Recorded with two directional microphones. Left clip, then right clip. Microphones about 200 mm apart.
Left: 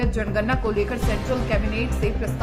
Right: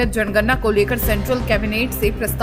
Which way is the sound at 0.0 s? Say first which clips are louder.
Right 7 dB; 25° right (ahead or behind).